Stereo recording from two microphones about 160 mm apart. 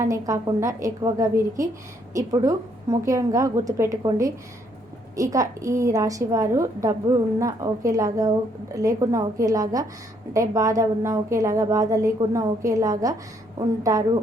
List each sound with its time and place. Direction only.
0.1 s a woman's voice: 20° right (ahead or behind)